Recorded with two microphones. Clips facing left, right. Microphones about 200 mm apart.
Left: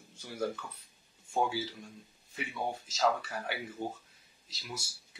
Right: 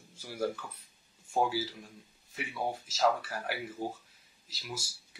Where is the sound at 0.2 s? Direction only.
10° right (ahead or behind).